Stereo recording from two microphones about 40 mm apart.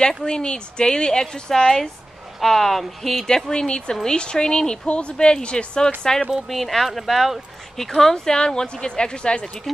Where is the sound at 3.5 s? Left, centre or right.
Centre.